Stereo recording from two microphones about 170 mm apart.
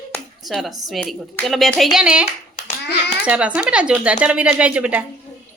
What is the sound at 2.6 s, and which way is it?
Hands, 75° left (ahead or behind).